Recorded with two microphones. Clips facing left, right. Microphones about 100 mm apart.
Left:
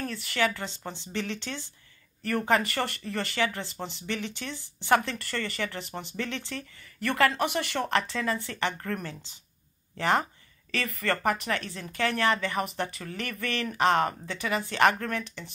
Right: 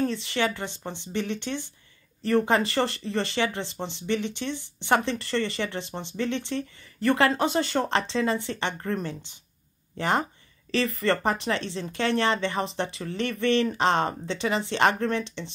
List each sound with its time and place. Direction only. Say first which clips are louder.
0.0 s speech: right 3 dB; 20° right (ahead or behind)